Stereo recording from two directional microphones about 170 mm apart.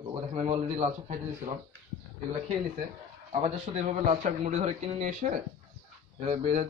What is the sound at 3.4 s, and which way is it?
A man's voice, 45° right (ahead or behind).